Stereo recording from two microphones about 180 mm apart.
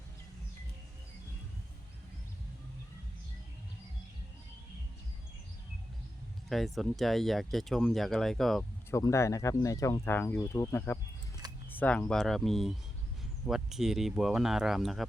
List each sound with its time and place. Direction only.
6.5 s speech: centre (ahead or behind)
8.9 s speech: 15° left (ahead or behind); by 15.0 s centre (ahead or behind)